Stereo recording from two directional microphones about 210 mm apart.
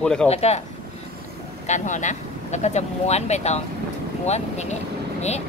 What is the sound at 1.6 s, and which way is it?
Speech, 35° left (ahead or behind).